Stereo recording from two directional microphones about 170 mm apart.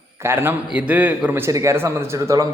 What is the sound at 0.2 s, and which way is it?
A man's voice, 15° right (ahead or behind).